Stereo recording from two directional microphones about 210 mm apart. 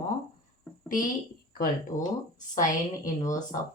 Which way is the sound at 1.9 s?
40° left (ahead or behind).